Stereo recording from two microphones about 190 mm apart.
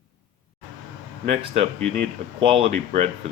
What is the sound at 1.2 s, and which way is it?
Speech, 35° right (ahead or behind).